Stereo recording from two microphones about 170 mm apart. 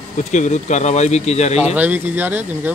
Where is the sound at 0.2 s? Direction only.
45° left (ahead or behind).